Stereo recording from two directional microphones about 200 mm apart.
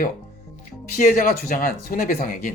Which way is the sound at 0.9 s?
45° left (ahead or behind).